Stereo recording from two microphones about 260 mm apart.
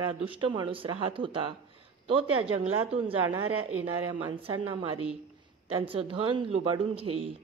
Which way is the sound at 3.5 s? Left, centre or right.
Right.